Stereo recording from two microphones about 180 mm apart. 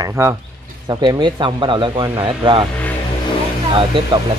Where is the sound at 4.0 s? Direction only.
30° right (ahead or behind).